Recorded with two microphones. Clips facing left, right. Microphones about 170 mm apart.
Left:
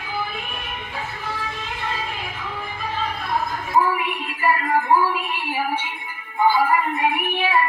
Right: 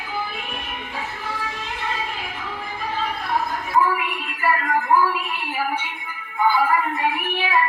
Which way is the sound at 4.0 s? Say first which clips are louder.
Left 1 dB; 25° left (ahead or behind).